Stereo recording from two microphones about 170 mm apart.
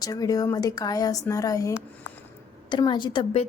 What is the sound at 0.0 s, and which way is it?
A woman's voice, 20° left (ahead or behind).